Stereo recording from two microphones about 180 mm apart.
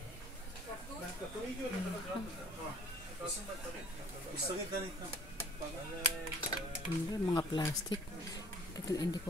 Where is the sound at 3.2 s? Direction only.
Centre (ahead or behind).